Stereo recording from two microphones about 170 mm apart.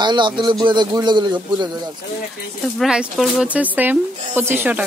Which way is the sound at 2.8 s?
5° right (ahead or behind).